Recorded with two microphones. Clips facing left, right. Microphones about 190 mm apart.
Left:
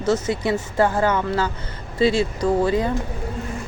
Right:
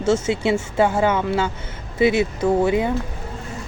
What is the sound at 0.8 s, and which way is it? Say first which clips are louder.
Speech: right 1 dB; 10° right (ahead or behind).